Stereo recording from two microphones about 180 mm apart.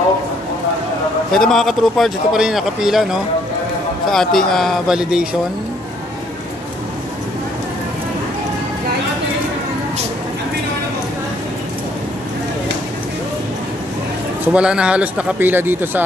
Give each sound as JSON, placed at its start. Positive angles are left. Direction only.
{"t": 1.3, "sound": "a man's voice", "side_deg": 0}
{"t": 14.5, "sound": "a man's voice", "side_deg": -5}